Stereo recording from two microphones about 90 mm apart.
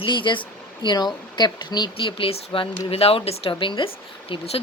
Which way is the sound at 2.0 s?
85° left.